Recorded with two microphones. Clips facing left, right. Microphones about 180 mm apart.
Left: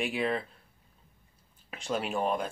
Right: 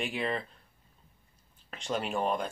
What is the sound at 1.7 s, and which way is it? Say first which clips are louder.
Speech: left 1 dB; 5° left (ahead or behind).